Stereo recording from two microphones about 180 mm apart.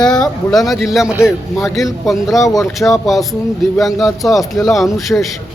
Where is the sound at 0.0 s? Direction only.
5° left (ahead or behind).